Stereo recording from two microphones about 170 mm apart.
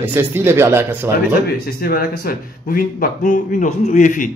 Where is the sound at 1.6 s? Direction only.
60° left (ahead or behind).